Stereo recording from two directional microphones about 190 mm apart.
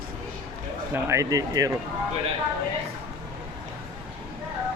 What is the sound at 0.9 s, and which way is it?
Speech, 15° right (ahead or behind).